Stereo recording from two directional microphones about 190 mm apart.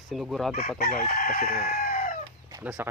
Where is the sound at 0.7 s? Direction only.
50° left (ahead or behind).